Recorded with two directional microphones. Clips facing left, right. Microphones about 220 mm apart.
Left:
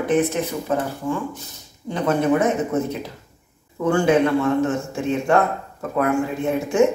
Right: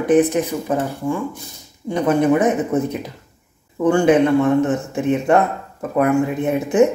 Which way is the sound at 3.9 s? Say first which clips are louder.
Right 3 dB; 20° right (ahead or behind).